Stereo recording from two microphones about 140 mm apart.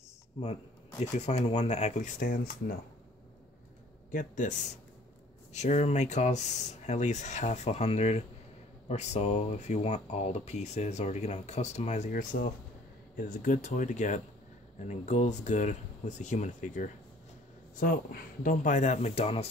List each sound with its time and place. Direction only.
0.4 s speech: 50° left (ahead or behind); by 2.5 s 75° left (ahead or behind)
4.1 s speech: 65° left (ahead or behind)
5.5 s speech: 55° left (ahead or behind)
12.1 s speech: 85° left
13.1 s speech: 70° left (ahead or behind)
17.7 s speech: 90° left; by 19.5 s 45° left (ahead or behind)